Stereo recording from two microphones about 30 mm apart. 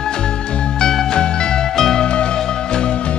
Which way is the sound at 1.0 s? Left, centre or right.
Left.